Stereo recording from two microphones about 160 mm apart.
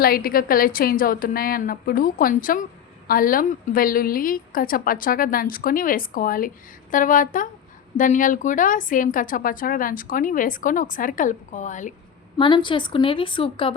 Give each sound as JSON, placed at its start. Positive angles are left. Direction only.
{"t": 0.0, "sound": "a woman's voice", "side_deg": 65}
{"t": 12.4, "sound": "a woman's voice", "side_deg": 30}